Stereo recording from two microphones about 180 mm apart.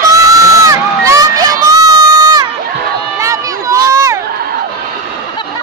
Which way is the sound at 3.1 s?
15° right (ahead or behind).